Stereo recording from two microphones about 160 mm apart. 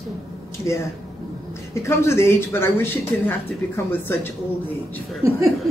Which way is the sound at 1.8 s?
15° left (ahead or behind).